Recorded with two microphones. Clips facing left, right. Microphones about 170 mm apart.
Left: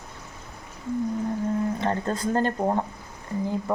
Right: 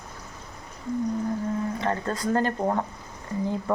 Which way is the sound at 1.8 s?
30° left (ahead or behind).